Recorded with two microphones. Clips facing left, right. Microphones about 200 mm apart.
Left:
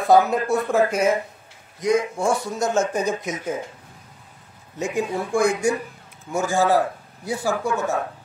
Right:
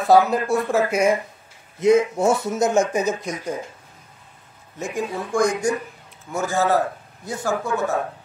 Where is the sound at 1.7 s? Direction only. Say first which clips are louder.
Right 4 dB; 25° right (ahead or behind).